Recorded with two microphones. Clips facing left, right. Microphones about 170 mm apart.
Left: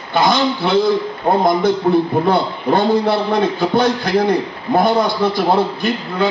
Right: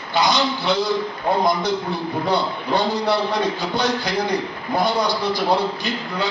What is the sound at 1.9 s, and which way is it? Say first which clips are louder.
A man's voice: left 8 dB; 55° left (ahead or behind).